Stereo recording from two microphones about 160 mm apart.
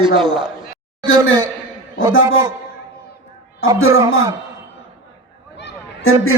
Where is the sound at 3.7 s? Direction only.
20° right (ahead or behind).